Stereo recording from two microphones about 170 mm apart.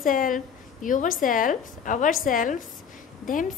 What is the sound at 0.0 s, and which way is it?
A woman's voice, 55° left (ahead or behind).